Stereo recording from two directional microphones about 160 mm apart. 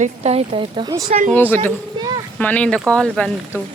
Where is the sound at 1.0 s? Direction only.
45° right (ahead or behind).